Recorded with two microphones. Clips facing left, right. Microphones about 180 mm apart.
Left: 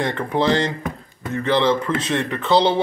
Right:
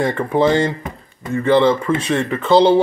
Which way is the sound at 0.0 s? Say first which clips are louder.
Right 4 dB; 5° right (ahead or behind).